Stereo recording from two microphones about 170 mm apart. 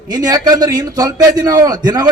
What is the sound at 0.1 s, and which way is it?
A man's voice, 20° right (ahead or behind).